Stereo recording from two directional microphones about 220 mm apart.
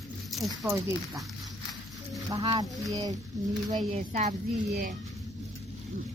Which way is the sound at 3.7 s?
35° right (ahead or behind).